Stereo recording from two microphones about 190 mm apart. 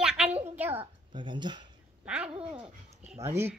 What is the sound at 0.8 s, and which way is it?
Speech, 25° right (ahead or behind).